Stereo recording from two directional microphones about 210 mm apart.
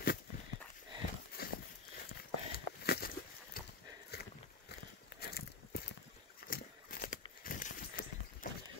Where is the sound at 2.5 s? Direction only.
50° left (ahead or behind).